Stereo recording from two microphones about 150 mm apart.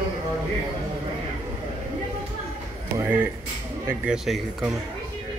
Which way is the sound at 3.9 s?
5° right (ahead or behind).